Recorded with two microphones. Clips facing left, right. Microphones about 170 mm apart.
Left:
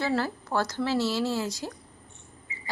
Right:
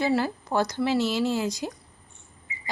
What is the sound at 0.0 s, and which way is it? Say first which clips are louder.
A woman's voice: right 3 dB; 15° right (ahead or behind).